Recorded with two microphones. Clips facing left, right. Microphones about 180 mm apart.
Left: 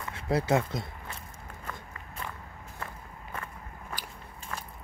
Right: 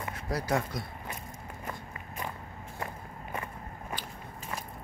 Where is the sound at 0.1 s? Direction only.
25° left (ahead or behind).